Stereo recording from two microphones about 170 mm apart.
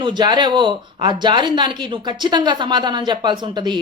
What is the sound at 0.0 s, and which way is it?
Speech, 25° right (ahead or behind).